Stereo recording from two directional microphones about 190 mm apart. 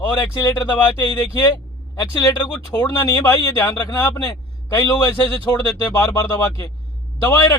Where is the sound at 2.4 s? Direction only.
20° left (ahead or behind).